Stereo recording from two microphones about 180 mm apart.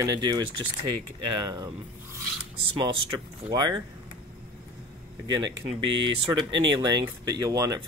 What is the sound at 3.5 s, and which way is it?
Speech, 25° right (ahead or behind).